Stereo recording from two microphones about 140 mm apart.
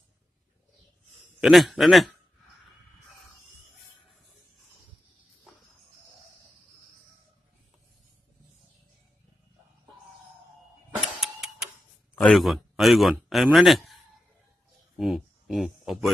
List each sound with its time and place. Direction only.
1.4 s a man's voice: centre (ahead or behind)
11.0 s vehicle: centre (ahead or behind)
12.2 s a man's voice: 5° left (ahead or behind)
15.0 s speech: centre (ahead or behind)